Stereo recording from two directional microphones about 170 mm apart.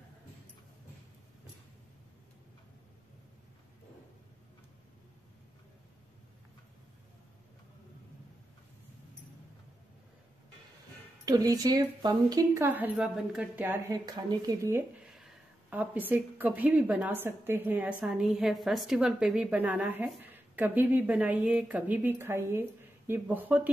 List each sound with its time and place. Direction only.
11.2 s a woman's voice: 20° right (ahead or behind)
14.0 s speech: 25° right (ahead or behind)
15.7 s a woman's voice: 10° right (ahead or behind)